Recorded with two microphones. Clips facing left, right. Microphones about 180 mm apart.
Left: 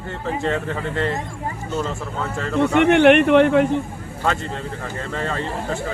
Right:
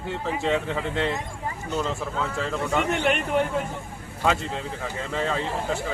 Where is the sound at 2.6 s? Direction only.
70° left (ahead or behind).